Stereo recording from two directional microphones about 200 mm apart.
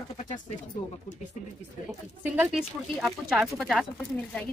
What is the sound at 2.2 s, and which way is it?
A woman's voice, 5° right (ahead or behind).